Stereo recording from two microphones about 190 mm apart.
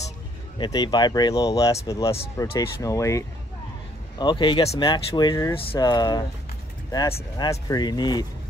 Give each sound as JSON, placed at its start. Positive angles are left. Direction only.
{"t": 0.6, "sound": "speech", "side_deg": 20}